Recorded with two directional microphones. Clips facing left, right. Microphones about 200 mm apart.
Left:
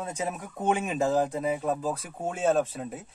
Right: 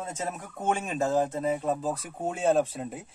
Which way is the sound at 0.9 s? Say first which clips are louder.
Left 1 dB; centre (ahead or behind).